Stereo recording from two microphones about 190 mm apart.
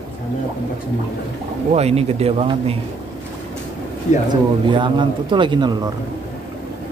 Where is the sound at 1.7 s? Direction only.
35° right (ahead or behind).